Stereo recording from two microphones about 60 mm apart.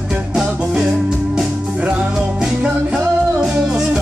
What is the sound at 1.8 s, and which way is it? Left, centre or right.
Music, right.